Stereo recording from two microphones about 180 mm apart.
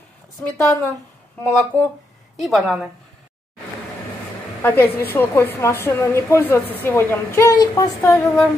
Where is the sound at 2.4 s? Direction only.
Centre (ahead or behind).